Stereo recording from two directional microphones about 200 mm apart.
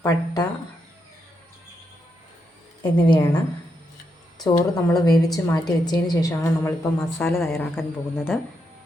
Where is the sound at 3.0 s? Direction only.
25° left (ahead or behind).